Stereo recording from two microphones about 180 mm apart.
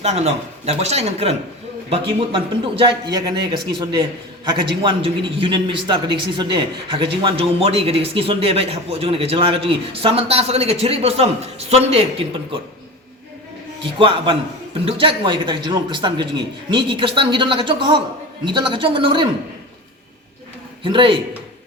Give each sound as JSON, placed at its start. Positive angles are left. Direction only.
{"t": 0.0, "sound": "a man's voice", "side_deg": -35}
{"t": 14.0, "sound": "a man's voice", "side_deg": -30}
{"t": 20.8, "sound": "a man's voice", "side_deg": -30}